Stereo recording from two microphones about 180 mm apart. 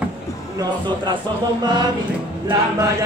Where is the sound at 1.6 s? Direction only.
25° right (ahead or behind).